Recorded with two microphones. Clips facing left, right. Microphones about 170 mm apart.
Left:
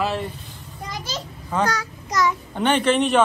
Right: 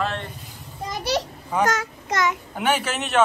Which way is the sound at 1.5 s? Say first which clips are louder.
Right 1 dB; 20° right (ahead or behind).